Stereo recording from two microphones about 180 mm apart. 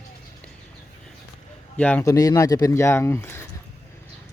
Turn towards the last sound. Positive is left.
turn(degrees=15)  # may be behind; listen again after turning